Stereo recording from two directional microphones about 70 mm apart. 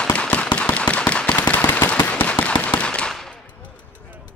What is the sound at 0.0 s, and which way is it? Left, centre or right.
Firecracker, centre.